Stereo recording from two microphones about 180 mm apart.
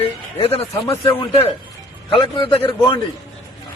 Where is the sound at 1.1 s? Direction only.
35° left (ahead or behind).